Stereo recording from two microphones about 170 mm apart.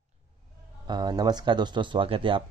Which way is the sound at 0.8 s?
25° right (ahead or behind).